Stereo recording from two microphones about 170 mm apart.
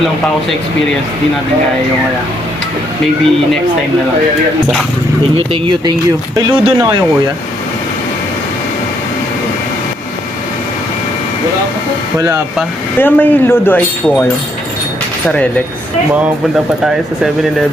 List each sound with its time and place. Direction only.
5.6 s speech: 25° right (ahead or behind)
13.0 s speech: 10° left (ahead or behind)